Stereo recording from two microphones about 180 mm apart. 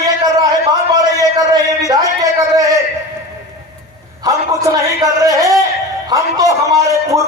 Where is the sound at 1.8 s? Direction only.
20° right (ahead or behind).